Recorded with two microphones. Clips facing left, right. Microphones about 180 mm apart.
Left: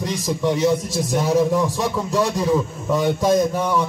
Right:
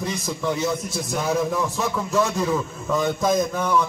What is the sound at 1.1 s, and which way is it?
Speech, 15° left (ahead or behind).